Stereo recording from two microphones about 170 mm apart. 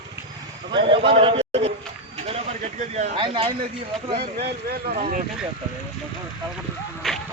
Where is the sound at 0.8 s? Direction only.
30° right (ahead or behind).